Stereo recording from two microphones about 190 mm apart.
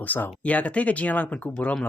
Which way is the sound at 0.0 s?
10° left (ahead or behind).